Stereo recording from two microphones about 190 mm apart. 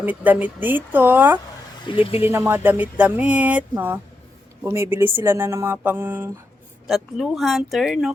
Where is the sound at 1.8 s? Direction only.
25° left (ahead or behind).